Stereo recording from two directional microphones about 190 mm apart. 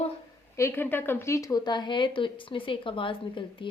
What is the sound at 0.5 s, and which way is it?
A woman's voice, 15° left (ahead or behind).